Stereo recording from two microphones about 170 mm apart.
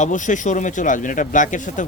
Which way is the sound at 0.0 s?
45° left (ahead or behind).